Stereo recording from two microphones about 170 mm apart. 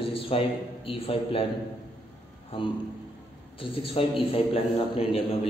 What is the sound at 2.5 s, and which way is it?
A man's voice, 35° left (ahead or behind).